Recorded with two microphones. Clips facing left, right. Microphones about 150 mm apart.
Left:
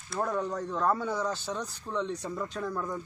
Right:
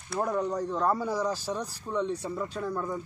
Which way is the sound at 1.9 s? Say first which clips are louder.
Right 3 dB; 10° right (ahead or behind).